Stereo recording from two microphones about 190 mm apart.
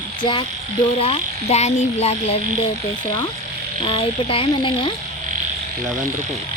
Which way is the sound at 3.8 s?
30° left (ahead or behind).